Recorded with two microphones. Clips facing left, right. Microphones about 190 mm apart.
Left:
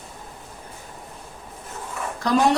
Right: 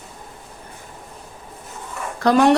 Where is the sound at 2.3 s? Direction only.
70° right (ahead or behind).